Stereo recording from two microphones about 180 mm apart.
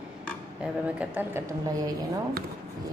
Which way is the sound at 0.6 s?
5° right (ahead or behind).